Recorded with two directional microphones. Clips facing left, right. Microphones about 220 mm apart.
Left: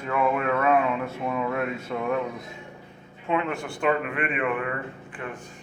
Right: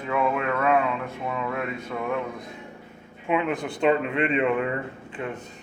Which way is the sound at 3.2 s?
15° right (ahead or behind).